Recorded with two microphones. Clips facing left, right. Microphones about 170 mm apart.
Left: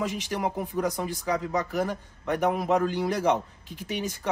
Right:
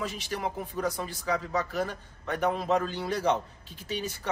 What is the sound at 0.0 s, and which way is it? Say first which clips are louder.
A man's voice: left 4 dB; 15° left (ahead or behind).